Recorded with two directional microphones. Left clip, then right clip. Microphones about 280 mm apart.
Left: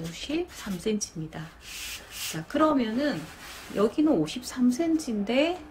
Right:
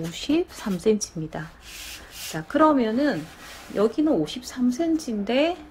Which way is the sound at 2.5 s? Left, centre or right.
Centre.